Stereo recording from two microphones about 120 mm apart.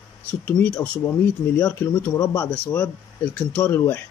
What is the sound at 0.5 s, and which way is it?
Speech, 15° left (ahead or behind).